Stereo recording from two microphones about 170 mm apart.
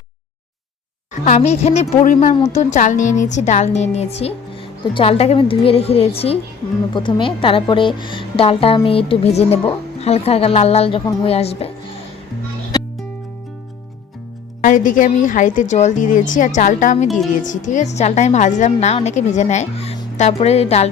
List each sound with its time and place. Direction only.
1.2 s a woman's voice: 40° left (ahead or behind)
14.6 s a woman's voice: 50° left (ahead or behind)